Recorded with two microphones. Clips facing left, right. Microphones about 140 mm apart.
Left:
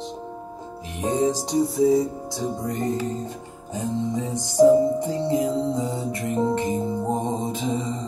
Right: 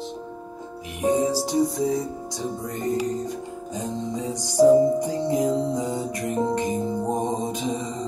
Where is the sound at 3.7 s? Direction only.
15° right (ahead or behind).